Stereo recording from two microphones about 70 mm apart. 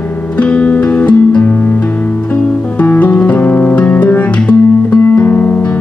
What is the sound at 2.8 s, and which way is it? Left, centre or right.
Music, left.